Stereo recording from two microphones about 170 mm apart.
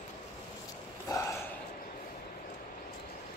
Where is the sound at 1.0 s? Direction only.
15° left (ahead or behind).